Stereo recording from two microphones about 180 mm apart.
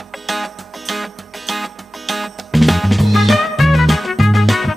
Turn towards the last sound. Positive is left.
turn(degrees=0)  # may be behind; listen again after turning